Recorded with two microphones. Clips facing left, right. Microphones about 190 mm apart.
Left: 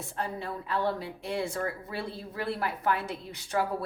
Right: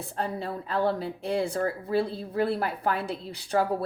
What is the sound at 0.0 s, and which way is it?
A woman's voice, 35° right (ahead or behind).